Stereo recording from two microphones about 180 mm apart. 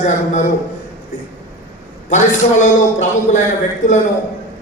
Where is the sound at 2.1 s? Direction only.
45° left (ahead or behind).